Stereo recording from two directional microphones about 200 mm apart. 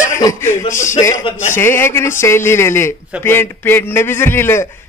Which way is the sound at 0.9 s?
15° left (ahead or behind).